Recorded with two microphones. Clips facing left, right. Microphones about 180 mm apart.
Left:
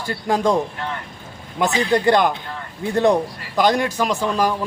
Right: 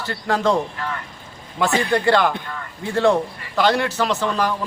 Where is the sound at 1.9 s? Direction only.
15° left (ahead or behind).